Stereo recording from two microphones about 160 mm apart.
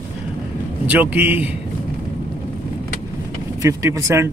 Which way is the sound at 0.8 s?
10° right (ahead or behind).